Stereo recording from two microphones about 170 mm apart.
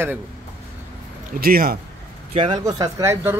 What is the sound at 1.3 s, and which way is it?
Speech, 60° right (ahead or behind).